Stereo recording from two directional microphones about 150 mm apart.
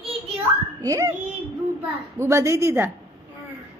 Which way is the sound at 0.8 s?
20° right (ahead or behind).